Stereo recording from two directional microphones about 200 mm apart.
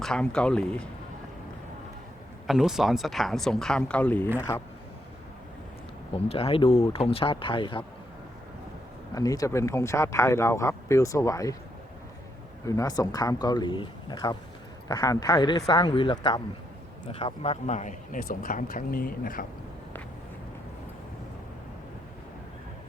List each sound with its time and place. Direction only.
0.0 s speech: 5° left (ahead or behind)
2.5 s speech: centre (ahead or behind); by 4.6 s 15° left (ahead or behind)
6.1 s speech: 30° left (ahead or behind)
9.1 s speech: 20° left (ahead or behind)
12.6 s speech: 15° left (ahead or behind); by 19.5 s 45° left (ahead or behind)